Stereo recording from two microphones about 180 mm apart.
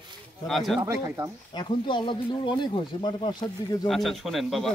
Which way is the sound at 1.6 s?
25° left (ahead or behind).